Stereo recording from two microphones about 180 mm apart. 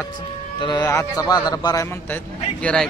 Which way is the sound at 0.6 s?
25° left (ahead or behind).